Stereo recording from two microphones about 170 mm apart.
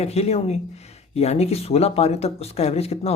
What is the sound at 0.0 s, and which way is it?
A man's voice, 40° left (ahead or behind).